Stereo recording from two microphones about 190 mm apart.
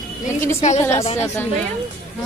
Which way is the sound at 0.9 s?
35° left (ahead or behind).